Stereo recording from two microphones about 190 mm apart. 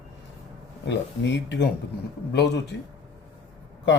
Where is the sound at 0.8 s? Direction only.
65° left (ahead or behind).